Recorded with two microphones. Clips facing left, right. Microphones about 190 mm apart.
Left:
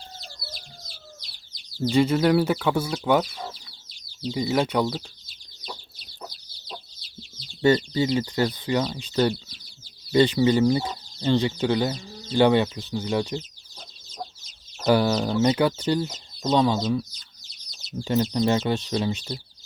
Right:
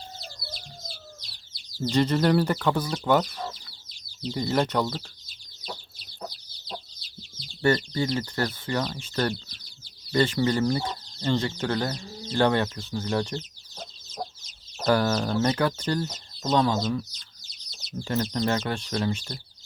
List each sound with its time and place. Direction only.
1.8 s speech: 10° left (ahead or behind)
7.6 s speech: 20° left (ahead or behind)
14.8 s speech: 15° left (ahead or behind)